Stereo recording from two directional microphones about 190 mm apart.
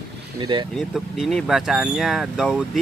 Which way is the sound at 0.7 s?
Centre (ahead or behind).